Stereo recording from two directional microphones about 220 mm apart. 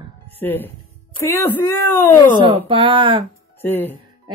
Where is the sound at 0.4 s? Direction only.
10° left (ahead or behind).